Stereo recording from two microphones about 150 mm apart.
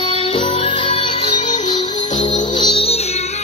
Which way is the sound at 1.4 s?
55° left (ahead or behind).